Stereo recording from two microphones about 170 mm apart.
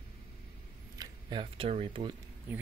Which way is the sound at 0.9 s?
30° right (ahead or behind).